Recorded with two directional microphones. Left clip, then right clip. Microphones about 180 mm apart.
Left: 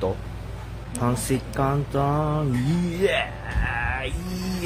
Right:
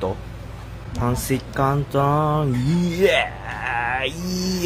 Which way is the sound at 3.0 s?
30° right (ahead or behind).